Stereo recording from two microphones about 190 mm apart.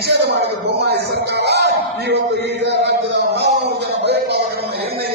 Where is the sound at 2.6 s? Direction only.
65° right (ahead or behind).